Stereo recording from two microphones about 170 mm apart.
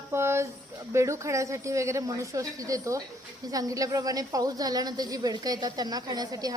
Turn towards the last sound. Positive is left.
turn(degrees=-20)  # may be behind; listen again after turning